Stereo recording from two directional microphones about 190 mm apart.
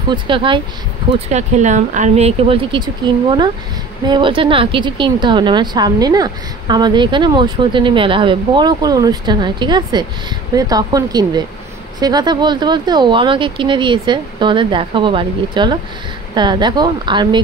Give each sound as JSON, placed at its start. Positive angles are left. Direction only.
{"t": 0.1, "sound": "a woman's voice", "side_deg": -25}
{"t": 1.3, "sound": "a woman's voice", "side_deg": -40}